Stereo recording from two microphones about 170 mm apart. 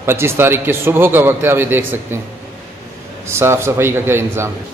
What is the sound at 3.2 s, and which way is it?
Speech, 15° right (ahead or behind).